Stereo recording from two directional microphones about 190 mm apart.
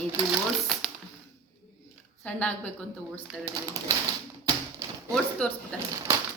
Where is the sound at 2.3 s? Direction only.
10° left (ahead or behind).